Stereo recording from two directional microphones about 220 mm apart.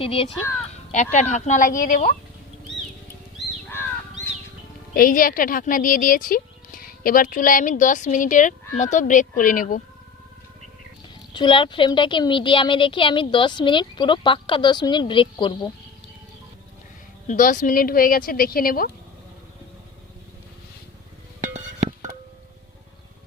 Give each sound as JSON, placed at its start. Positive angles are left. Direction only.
{"t": 0.0, "sound": "speech", "side_deg": 25}
{"t": 3.3, "sound": "crow", "side_deg": 10}
{"t": 4.9, "sound": "speech", "side_deg": 40}
{"t": 11.3, "sound": "speech", "side_deg": 20}
{"t": 17.2, "sound": "speech", "side_deg": 35}
{"t": 21.4, "sound": "music", "side_deg": -35}